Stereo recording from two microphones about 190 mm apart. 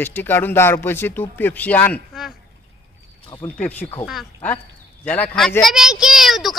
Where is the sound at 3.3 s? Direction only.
25° left (ahead or behind).